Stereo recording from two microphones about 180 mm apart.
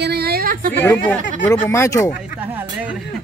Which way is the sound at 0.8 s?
10° left (ahead or behind).